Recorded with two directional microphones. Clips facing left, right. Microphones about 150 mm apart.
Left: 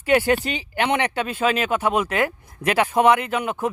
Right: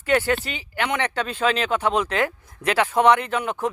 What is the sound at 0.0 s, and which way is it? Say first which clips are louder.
Speech: left 3 dB; 15° left (ahead or behind).